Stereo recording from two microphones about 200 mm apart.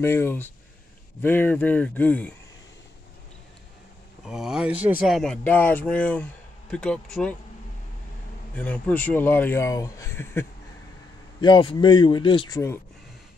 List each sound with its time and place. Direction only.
0.0 s speech: 10° left (ahead or behind)
4.3 s speech: centre (ahead or behind)
8.5 s speech: 5° left (ahead or behind)
11.4 s a man's voice: 25° left (ahead or behind)